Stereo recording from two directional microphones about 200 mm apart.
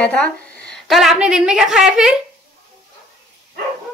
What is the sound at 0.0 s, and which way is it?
A woman's voice, 5° left (ahead or behind).